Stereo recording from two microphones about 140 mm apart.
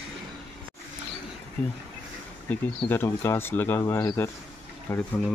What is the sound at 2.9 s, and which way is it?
Speech, 15° left (ahead or behind).